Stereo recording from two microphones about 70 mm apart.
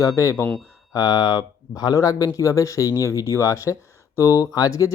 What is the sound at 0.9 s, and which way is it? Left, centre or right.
Speech, left.